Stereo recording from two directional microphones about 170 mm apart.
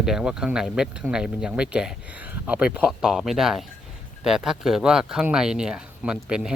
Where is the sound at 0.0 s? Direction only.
5° right (ahead or behind).